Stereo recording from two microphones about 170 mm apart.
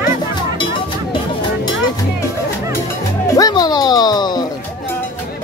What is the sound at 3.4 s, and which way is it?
Music, 20° left (ahead or behind).